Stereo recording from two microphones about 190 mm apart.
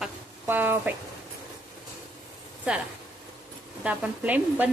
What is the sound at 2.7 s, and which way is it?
Speech, 5° right (ahead or behind).